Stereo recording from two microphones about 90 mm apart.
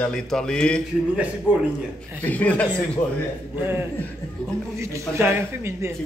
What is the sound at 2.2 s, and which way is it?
Speech, 15° left (ahead or behind).